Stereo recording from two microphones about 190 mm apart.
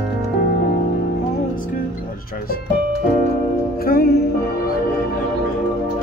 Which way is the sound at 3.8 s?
55° left (ahead or behind).